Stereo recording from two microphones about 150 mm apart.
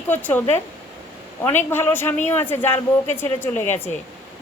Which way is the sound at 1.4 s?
15° left (ahead or behind).